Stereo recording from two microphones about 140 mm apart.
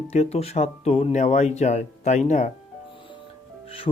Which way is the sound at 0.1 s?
50° left (ahead or behind).